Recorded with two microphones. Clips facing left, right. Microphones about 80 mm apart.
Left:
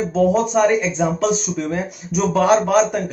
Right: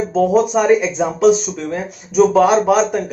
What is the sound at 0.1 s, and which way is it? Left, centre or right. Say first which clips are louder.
Speech: right 3 dB; centre.